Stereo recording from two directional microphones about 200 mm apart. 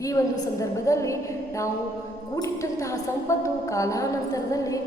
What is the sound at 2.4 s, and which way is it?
A woman's voice, 15° left (ahead or behind).